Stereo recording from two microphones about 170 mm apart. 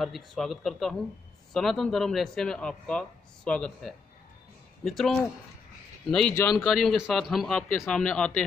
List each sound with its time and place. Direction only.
0.0 s a man's voice: centre (ahead or behind)
6.3 s speech: 15° left (ahead or behind)
6.6 s a man's voice: centre (ahead or behind)